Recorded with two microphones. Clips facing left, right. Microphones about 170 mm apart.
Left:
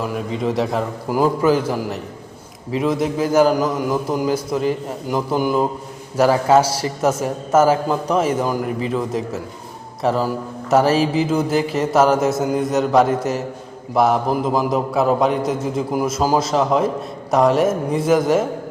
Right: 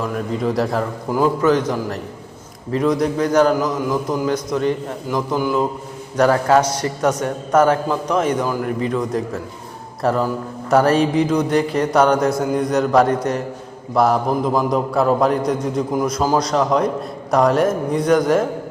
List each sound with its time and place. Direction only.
0.0 s a man's voice: 5° left (ahead or behind)
1.1 s a man's voice: 10° left (ahead or behind)
5.4 s a man's voice: 15° left (ahead or behind)
6.1 s a man's voice: 5° left (ahead or behind)